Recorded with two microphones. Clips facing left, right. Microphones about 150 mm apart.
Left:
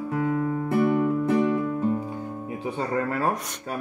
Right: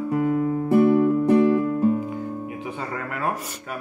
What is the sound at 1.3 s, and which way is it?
Music, 5° left (ahead or behind).